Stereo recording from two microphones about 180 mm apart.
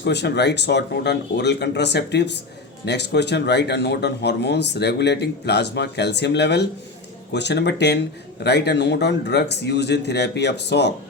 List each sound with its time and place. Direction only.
0.0 s speech: 70° left (ahead or behind)